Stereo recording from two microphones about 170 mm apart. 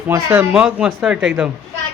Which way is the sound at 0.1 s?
10° right (ahead or behind).